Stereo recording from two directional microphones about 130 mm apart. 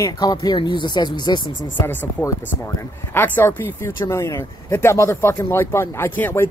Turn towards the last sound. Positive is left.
turn(degrees=15)  # may be behind; listen again after turning